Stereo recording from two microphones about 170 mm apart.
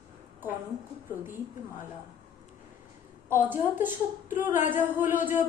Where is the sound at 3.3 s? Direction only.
10° right (ahead or behind).